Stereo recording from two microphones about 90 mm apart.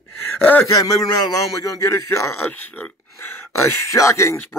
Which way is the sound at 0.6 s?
40° left (ahead or behind).